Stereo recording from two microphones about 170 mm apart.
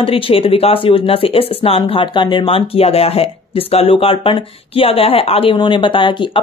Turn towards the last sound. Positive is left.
turn(degrees=30)  # may be behind; listen again after turning